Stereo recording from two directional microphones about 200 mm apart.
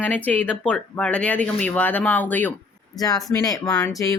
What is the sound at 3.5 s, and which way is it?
Speech, centre (ahead or behind).